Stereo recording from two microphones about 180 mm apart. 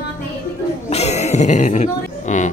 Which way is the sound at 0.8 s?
40° left (ahead or behind).